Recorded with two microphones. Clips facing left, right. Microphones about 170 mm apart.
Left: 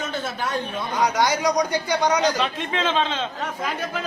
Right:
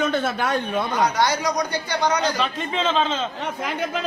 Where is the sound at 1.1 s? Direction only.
15° left (ahead or behind).